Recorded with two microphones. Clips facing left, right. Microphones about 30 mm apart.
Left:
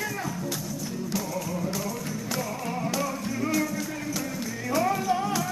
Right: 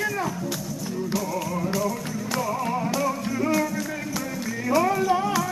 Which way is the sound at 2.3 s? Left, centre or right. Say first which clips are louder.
Right 7 dB; centre.